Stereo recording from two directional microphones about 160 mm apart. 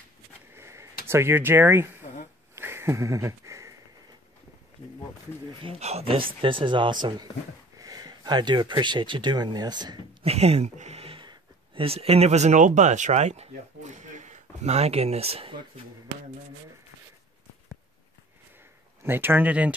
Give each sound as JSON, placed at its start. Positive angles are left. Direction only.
{"t": 0.6, "sound": "a sound", "side_deg": -15}
{"t": 1.0, "sound": "speech", "side_deg": -15}
{"t": 2.5, "sound": "a sound", "side_deg": -15}
{"t": 5.5, "sound": "speech", "side_deg": -35}
{"t": 10.2, "sound": "speech", "side_deg": -40}
{"t": 19.0, "sound": "speech", "side_deg": -15}